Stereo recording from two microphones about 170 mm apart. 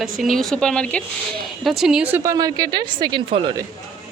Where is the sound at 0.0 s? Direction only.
Centre (ahead or behind).